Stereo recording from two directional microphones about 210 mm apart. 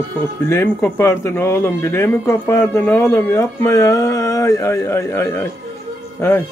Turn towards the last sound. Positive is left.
turn(degrees=10)  # may be behind; listen again after turning